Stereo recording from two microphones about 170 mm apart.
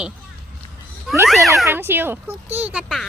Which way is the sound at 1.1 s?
Centre (ahead or behind).